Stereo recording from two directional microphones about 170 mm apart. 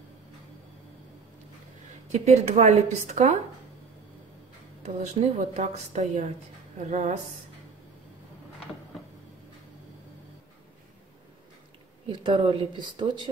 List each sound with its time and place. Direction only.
2.1 s speech: 40° right (ahead or behind)
4.8 s a woman's voice: 40° right (ahead or behind)
12.1 s speech: 30° right (ahead or behind)